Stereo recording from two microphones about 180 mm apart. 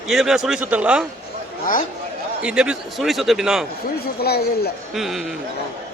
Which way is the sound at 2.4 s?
5° right (ahead or behind).